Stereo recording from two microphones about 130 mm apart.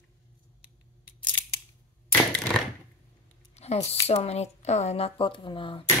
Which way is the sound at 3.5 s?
55° left (ahead or behind).